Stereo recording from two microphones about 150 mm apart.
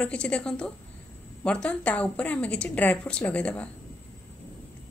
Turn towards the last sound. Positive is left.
turn(degrees=10)  # may be behind; listen again after turning